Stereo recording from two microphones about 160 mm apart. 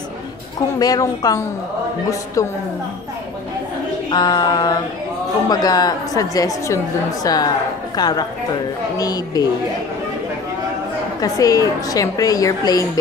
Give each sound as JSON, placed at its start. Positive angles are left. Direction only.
{"t": 0.7, "sound": "a woman's voice", "side_deg": 25}
{"t": 4.1, "sound": "a woman's voice", "side_deg": 25}
{"t": 11.1, "sound": "a woman's voice", "side_deg": 20}